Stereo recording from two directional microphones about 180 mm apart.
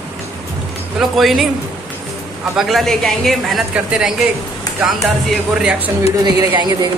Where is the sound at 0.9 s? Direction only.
Centre (ahead or behind).